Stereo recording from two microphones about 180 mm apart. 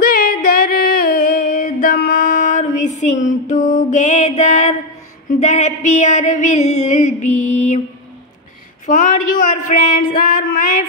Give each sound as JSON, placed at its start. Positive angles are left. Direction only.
{"t": 0.0, "sound": "music", "side_deg": 55}
{"t": 5.4, "sound": "a sound", "side_deg": 40}
{"t": 8.8, "sound": "speech", "side_deg": 45}